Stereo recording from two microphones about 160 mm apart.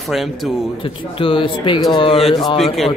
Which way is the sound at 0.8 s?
35° left (ahead or behind).